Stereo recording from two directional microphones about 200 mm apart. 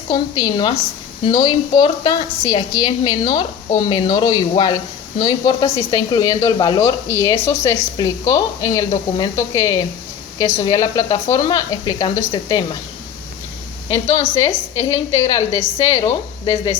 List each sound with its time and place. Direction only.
0.1 s speech: 20° left (ahead or behind)
14.3 s speech: 15° left (ahead or behind)